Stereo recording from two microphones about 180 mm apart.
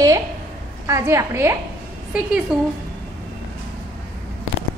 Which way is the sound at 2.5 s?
Centre (ahead or behind).